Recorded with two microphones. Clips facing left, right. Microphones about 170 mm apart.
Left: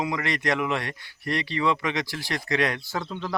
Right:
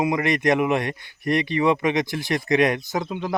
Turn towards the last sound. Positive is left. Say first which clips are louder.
# right 5 dB
turn(degrees=-15)  # may be behind; listen again after turning